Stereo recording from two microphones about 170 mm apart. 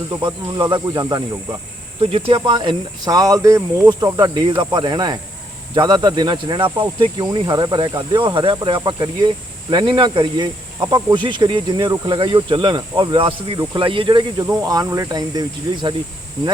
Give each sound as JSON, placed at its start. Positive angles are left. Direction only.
{"t": 0.1, "sound": "speech", "side_deg": -25}
{"t": 2.0, "sound": "speech", "side_deg": -35}